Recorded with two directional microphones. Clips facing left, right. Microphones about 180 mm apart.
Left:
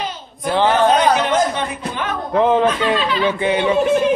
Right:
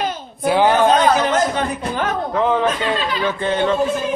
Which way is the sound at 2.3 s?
20° left (ahead or behind).